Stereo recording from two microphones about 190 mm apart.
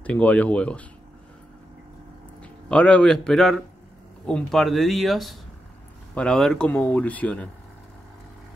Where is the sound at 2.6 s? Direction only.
5° left (ahead or behind).